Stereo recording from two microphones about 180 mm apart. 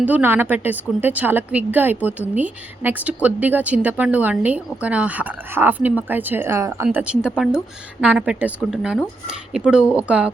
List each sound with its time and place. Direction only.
0.0 s speech: 10° right (ahead or behind)